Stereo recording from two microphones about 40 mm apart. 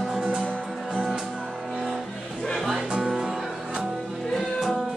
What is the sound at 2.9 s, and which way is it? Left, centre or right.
Music, right.